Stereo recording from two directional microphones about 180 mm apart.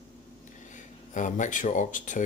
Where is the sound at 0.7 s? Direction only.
45° left (ahead or behind).